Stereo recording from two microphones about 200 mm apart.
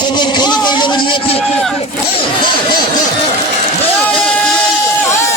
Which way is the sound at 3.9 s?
5° left (ahead or behind).